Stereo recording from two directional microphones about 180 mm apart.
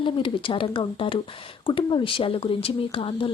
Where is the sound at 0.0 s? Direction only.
30° left (ahead or behind).